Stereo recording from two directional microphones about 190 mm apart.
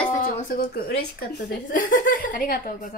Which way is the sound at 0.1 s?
45° left (ahead or behind).